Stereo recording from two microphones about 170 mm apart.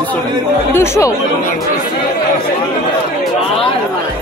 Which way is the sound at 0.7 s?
15° left (ahead or behind).